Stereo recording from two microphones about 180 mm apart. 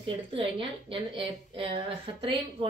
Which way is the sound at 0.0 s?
30° right (ahead or behind).